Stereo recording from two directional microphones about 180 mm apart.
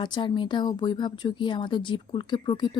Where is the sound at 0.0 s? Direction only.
25° left (ahead or behind).